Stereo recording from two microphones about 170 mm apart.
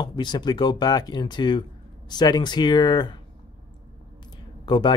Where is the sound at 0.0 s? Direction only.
25° left (ahead or behind).